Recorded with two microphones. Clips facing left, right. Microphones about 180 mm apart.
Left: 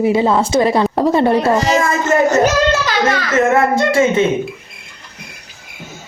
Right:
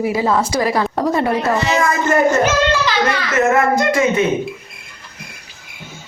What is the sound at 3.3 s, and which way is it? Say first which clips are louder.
Speech: left 1 dB; 25° left (ahead or behind).